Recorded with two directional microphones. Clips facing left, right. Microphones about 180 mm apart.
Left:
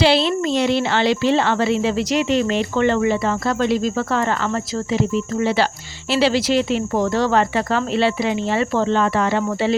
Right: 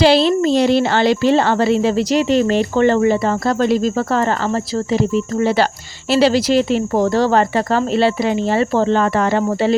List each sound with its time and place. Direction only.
0.0 s a woman's voice: 40° right (ahead or behind)